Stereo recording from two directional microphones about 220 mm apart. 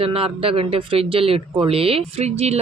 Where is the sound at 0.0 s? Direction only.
25° right (ahead or behind).